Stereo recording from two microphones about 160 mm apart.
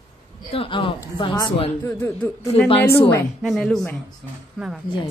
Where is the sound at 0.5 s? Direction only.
35° left (ahead or behind); by 2.5 s 15° left (ahead or behind).